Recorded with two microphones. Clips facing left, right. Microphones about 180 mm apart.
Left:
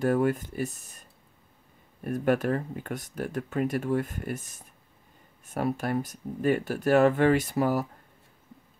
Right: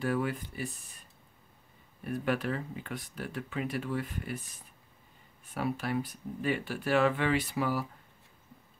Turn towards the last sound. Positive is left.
turn(degrees=45)  # may be behind; listen again after turning